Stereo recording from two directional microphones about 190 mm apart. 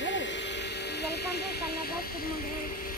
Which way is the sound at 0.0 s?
70° left (ahead or behind).